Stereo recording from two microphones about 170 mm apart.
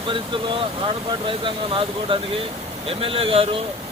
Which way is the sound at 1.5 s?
30° right (ahead or behind).